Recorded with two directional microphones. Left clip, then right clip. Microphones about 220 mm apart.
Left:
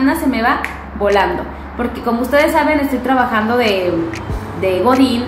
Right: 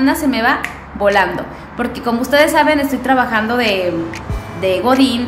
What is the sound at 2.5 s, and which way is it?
A woman's voice, 25° right (ahead or behind).